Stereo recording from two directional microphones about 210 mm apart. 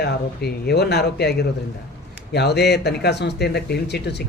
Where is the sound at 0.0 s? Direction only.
50° left (ahead or behind).